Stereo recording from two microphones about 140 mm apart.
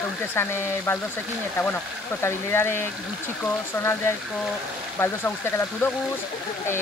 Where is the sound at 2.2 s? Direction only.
15° left (ahead or behind).